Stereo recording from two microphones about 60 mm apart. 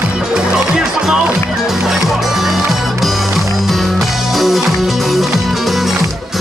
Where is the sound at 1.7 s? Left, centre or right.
Centre.